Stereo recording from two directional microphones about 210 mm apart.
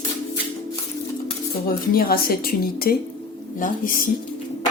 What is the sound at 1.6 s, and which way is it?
A woman's voice, 45° left (ahead or behind).